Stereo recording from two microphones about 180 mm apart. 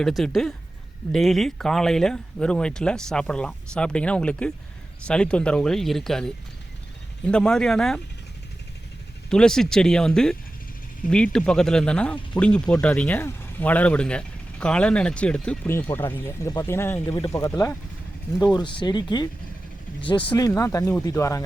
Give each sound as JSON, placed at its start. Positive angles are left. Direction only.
{"t": 0.0, "sound": "speech", "side_deg": 0}
{"t": 9.3, "sound": "speech", "side_deg": 5}